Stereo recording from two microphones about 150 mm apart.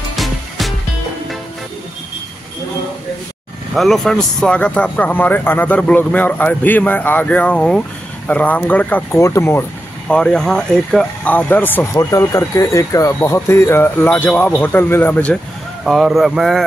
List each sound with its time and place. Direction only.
0.1 s music: centre (ahead or behind)
3.7 s speech: centre (ahead or behind)
10.0 s speech: 5° left (ahead or behind)
15.8 s speech: centre (ahead or behind)